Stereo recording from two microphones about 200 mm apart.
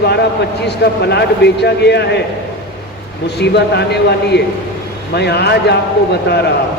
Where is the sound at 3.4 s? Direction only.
55° left (ahead or behind).